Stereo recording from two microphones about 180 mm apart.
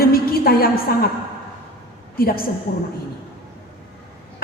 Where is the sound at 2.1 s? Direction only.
55° left (ahead or behind).